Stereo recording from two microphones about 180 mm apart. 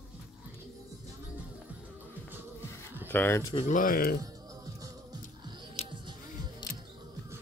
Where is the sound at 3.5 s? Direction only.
45° left (ahead or behind).